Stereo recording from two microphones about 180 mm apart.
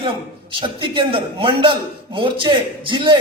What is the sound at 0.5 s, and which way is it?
A man's voice, 25° right (ahead or behind).